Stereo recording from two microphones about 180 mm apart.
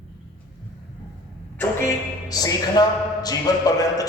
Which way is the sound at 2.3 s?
20° left (ahead or behind).